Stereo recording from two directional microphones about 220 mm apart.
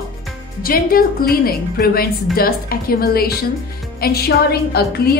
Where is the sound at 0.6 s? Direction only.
40° left (ahead or behind).